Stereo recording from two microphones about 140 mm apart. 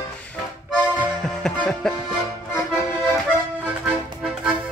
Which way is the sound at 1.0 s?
5° left (ahead or behind).